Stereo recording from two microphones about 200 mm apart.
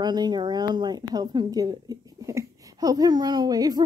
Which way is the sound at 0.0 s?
20° right (ahead or behind).